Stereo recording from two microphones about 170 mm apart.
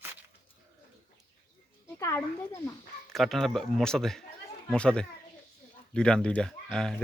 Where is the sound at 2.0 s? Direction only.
15° left (ahead or behind).